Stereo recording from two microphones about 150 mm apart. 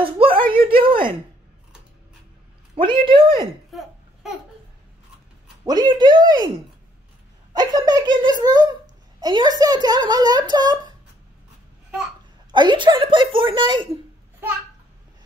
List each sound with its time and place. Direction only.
0.0 s a sound: 35° right (ahead or behind)
2.7 s a woman's voice: 35° right (ahead or behind)
3.7 s babbling: centre (ahead or behind)
5.7 s a child's voice: 30° right (ahead or behind)
7.5 s a child's voice: 25° right (ahead or behind)
12.4 s a woman's voice: 30° right (ahead or behind)